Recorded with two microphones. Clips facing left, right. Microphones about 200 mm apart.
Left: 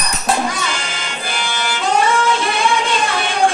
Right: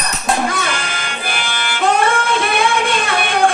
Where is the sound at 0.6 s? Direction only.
55° right (ahead or behind).